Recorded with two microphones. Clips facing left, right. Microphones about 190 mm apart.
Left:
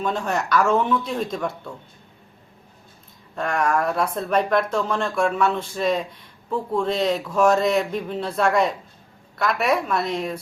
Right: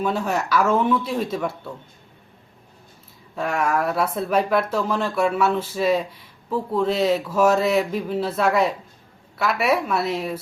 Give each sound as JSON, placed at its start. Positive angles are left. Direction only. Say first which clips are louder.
{"t": 0.0, "sound": "speech", "louder": "right 1 dB", "side_deg": -5}
{"t": 3.3, "sound": "speech", "louder": "even", "side_deg": -5}